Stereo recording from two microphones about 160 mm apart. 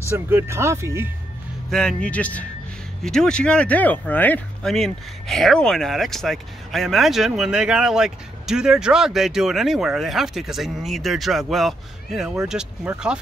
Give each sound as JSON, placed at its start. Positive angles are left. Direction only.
{"t": 0.1, "sound": "speech", "side_deg": -15}
{"t": 1.7, "sound": "speech", "side_deg": 5}